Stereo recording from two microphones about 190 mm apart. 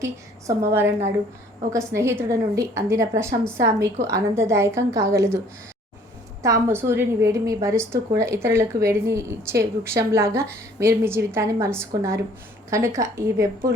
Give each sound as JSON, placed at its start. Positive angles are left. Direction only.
{"t": 0.0, "sound": "a woman's voice", "side_deg": -15}
{"t": 6.4, "sound": "a woman's voice", "side_deg": -15}